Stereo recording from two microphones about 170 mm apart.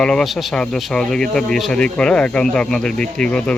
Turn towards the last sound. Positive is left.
turn(degrees=5)  # may be behind; listen again after turning